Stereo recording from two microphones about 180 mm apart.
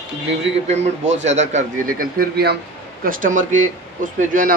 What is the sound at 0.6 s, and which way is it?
Speech, 40° right (ahead or behind).